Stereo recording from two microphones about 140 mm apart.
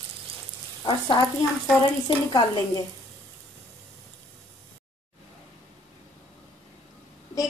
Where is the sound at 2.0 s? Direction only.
30° left (ahead or behind).